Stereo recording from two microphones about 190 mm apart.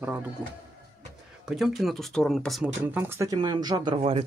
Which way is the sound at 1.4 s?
Centre (ahead or behind).